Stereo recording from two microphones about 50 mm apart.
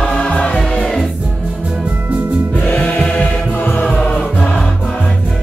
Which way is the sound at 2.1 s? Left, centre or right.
Right.